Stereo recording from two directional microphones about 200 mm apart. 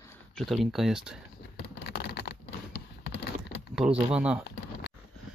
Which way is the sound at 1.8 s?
55° left (ahead or behind).